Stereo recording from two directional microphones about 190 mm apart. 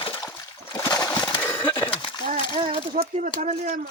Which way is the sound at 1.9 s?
25° left (ahead or behind).